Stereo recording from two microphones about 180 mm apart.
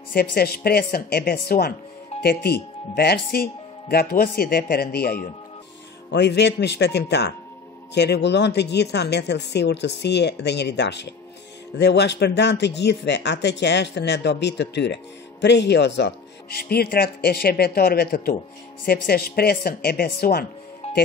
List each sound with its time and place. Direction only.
0.1 s speech: 60° left (ahead or behind)
6.1 s speech: 65° left (ahead or behind)
20.8 s music: 40° left (ahead or behind)